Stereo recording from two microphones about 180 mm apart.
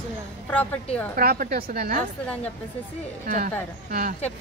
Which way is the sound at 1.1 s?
55° right (ahead or behind).